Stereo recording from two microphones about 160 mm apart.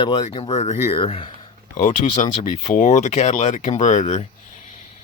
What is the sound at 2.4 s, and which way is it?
Speech, 50° left (ahead or behind).